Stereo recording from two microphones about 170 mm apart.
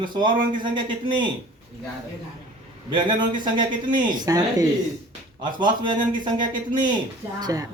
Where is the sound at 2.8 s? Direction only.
25° right (ahead or behind).